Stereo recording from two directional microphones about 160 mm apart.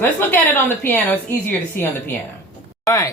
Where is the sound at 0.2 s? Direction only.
10° left (ahead or behind).